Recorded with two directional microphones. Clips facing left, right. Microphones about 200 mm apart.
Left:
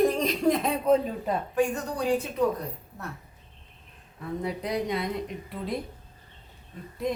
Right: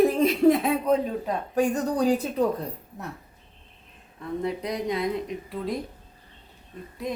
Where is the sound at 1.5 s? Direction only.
40° right (ahead or behind).